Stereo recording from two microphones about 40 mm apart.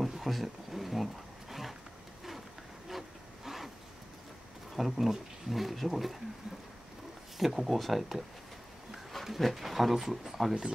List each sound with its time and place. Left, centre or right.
0.2 s a sound: centre
2.9 s vehicle: centre
4.7 s speech: centre
7.3 s speech: centre